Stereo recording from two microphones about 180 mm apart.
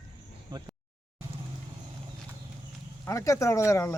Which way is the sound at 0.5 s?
25° right (ahead or behind).